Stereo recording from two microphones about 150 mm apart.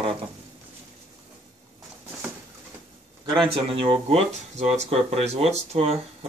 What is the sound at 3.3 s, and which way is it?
Speech, 35° right (ahead or behind).